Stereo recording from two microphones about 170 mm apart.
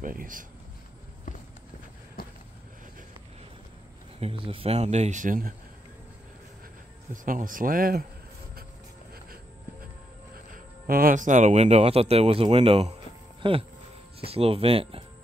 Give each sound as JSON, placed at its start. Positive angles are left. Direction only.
{"t": 0.0, "sound": "speech", "side_deg": -55}
{"t": 2.2, "sound": "vehicle", "side_deg": 60}
{"t": 4.2, "sound": "speech", "side_deg": -30}
{"t": 7.2, "sound": "speech", "side_deg": -55}
{"t": 10.5, "sound": "speech", "side_deg": -60}